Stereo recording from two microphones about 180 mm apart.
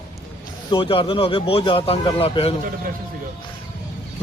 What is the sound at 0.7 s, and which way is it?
A man's voice, 30° left (ahead or behind).